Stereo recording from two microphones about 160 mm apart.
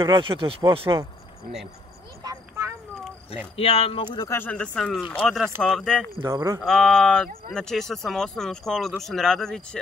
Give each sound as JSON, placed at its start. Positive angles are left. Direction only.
{"t": 0.0, "sound": "speech", "side_deg": -30}
{"t": 3.5, "sound": "speech", "side_deg": 35}
{"t": 4.3, "sound": "speech", "side_deg": 10}
{"t": 6.2, "sound": "speech", "side_deg": -20}
{"t": 6.6, "sound": "speech", "side_deg": 5}